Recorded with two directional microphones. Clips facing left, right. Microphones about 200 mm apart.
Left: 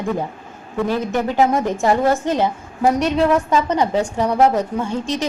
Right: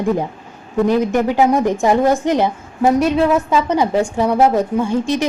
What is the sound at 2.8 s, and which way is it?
A woman's voice, 5° right (ahead or behind).